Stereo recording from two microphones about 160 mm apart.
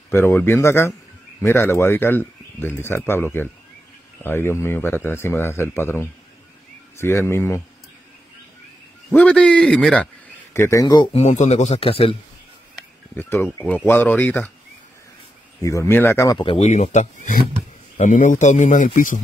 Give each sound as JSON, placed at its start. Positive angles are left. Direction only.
{"t": 0.1, "sound": "speech", "side_deg": 15}
{"t": 9.1, "sound": "speech", "side_deg": 10}
{"t": 11.1, "sound": "speech", "side_deg": 45}
{"t": 13.1, "sound": "speech", "side_deg": 15}
{"t": 15.6, "sound": "speech", "side_deg": 20}
{"t": 16.3, "sound": "speech", "side_deg": 35}
{"t": 16.6, "sound": "speech", "side_deg": 45}